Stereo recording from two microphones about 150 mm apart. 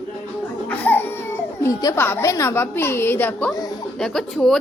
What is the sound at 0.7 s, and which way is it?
Crying, 15° left (ahead or behind).